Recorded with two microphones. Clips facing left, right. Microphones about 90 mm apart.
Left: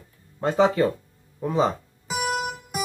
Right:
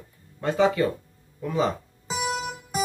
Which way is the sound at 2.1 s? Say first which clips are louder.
Left 2 dB; 50° left (ahead or behind).